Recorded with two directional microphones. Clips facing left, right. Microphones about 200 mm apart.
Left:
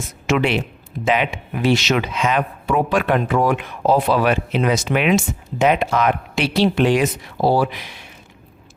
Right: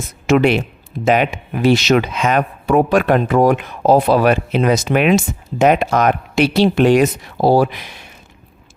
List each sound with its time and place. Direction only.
0.3 s speech: 45° right (ahead or behind)